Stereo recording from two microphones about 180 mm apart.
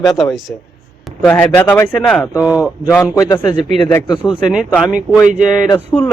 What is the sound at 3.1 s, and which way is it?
A man's voice, 20° left (ahead or behind).